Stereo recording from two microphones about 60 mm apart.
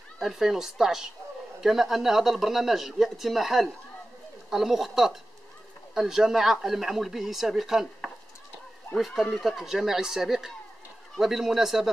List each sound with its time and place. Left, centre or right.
0.2 s speech: centre
9.6 s speech: centre